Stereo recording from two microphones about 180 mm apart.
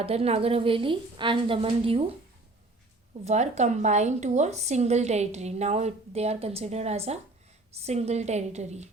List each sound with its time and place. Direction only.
0.0 s a woman's voice: 35° right (ahead or behind)
3.2 s a woman's voice: 40° right (ahead or behind)